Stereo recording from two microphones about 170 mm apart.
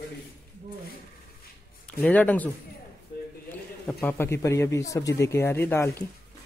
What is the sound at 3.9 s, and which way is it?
Speech, 10° left (ahead or behind).